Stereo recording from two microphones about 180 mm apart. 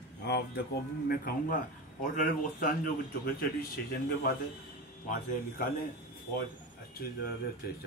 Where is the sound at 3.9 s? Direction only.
60° left (ahead or behind).